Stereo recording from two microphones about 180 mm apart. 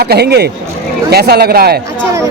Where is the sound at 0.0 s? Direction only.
65° right (ahead or behind).